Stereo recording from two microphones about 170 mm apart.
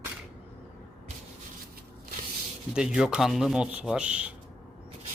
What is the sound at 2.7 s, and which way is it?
Speech, 5° right (ahead or behind).